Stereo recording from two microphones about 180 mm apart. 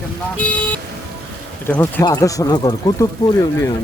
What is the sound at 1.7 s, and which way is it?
Speech, 10° left (ahead or behind).